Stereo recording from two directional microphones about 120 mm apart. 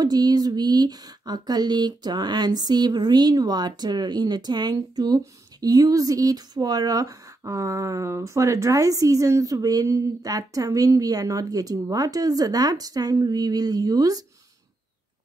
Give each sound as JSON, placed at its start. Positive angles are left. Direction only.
{"t": 0.0, "sound": "speech", "side_deg": -30}